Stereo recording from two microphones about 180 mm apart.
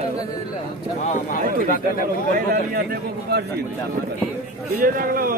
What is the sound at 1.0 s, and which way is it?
Speech, 40° left (ahead or behind).